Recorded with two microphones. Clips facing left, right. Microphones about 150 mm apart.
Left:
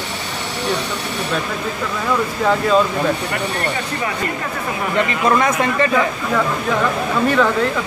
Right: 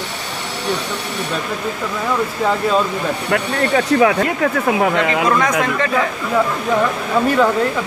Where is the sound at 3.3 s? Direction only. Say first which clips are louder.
Right 5 dB; 80° right.